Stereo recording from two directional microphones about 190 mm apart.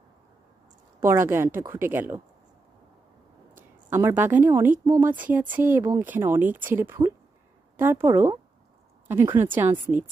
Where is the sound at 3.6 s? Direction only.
10° right (ahead or behind).